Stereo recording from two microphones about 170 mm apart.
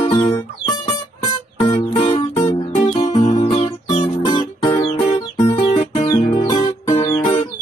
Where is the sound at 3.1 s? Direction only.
25° left (ahead or behind).